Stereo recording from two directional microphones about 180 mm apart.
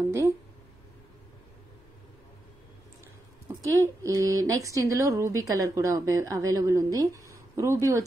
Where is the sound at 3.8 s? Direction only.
15° right (ahead or behind).